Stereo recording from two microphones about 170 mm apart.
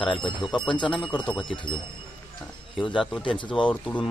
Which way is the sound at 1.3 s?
30° left (ahead or behind).